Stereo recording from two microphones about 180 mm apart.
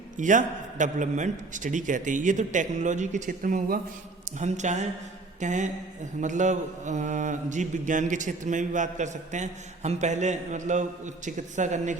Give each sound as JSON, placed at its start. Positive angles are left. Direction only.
{"t": 0.2, "sound": "mantra", "side_deg": -45}
{"t": 4.3, "sound": "a sound", "side_deg": -40}
{"t": 5.4, "sound": "mantra", "side_deg": -40}